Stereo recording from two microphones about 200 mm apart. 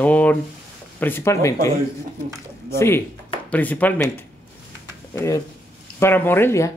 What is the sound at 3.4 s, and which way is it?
Speech, 10° left (ahead or behind).